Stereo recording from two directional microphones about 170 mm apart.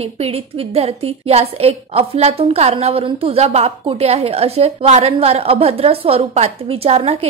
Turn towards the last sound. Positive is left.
turn(degrees=-35)  # may be behind; listen again after turning